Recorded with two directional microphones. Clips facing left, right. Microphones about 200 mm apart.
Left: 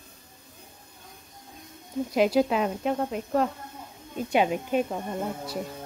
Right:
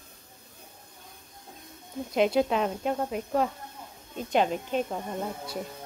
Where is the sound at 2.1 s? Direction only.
5° left (ahead or behind).